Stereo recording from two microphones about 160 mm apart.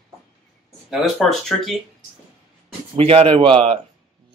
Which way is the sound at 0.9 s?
Centre (ahead or behind).